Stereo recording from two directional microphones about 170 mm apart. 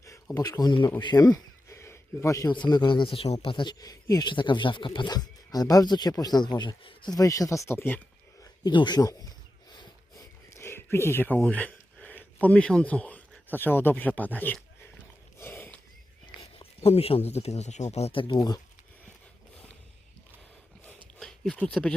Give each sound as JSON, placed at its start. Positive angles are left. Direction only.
{"t": 0.0, "sound": "a man's voice", "side_deg": 20}
{"t": 8.6, "sound": "speech", "side_deg": 25}
{"t": 9.7, "sound": "a sound", "side_deg": 20}
{"t": 16.2, "sound": "speech", "side_deg": 35}
{"t": 21.2, "sound": "speech", "side_deg": 5}